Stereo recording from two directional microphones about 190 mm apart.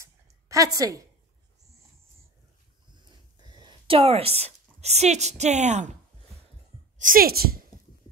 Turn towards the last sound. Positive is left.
turn(degrees=-50)  # may be behind; listen again after turning